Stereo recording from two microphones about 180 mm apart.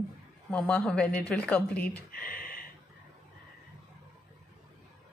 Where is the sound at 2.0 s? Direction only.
55° left (ahead or behind).